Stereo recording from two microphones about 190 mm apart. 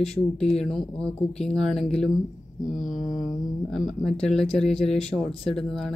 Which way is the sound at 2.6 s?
45° left (ahead or behind).